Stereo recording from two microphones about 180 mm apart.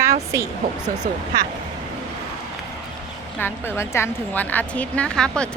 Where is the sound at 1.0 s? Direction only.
50° right (ahead or behind).